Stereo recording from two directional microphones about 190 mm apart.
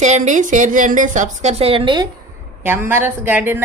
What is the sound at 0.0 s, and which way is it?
A woman's voice, 40° right (ahead or behind).